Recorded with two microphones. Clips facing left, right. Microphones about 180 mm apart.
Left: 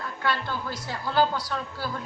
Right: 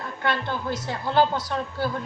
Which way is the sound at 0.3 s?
20° right (ahead or behind).